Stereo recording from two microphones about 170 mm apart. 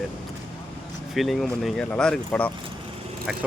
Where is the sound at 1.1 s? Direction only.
Centre (ahead or behind).